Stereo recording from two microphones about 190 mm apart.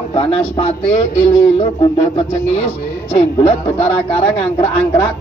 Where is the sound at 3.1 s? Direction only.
30° left (ahead or behind).